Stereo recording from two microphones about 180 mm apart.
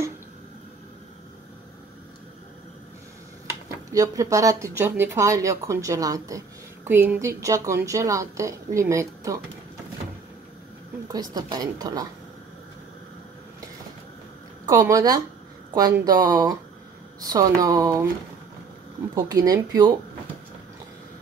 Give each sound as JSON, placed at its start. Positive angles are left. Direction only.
{"t": 3.9, "sound": "speech", "side_deg": -20}
{"t": 11.1, "sound": "a woman's voice", "side_deg": -20}
{"t": 14.7, "sound": "a woman's voice", "side_deg": -15}
{"t": 19.1, "sound": "a woman's voice", "side_deg": -20}